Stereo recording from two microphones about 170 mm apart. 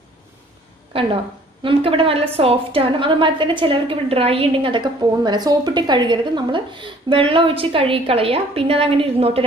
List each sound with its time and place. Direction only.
0.9 s a woman's voice: 30° right (ahead or behind)